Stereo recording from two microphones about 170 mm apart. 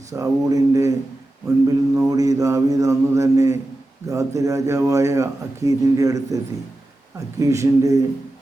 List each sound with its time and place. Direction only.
0.1 s a man's voice: 20° right (ahead or behind)